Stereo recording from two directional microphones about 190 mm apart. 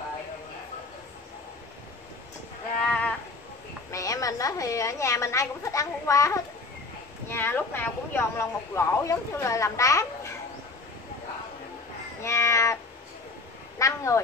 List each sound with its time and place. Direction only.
2.9 s livestock: 5° left (ahead or behind)
3.9 s a woman's voice: 15° left (ahead or behind)
12.2 s meow: 15° left (ahead or behind)
13.7 s a sound: 15° left (ahead or behind)